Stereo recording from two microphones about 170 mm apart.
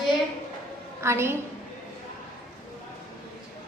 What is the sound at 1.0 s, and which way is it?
Speech, 15° right (ahead or behind).